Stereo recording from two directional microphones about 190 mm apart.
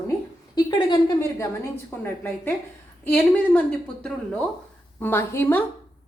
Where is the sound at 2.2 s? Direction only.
10° left (ahead or behind).